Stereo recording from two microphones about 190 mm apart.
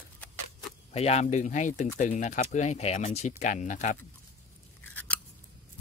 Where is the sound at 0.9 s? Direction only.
35° left (ahead or behind).